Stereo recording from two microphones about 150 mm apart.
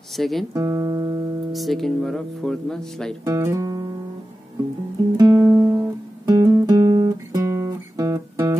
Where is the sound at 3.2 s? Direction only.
25° right (ahead or behind).